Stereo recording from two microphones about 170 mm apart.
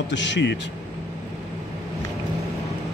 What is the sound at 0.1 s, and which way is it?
Speech, 90° left.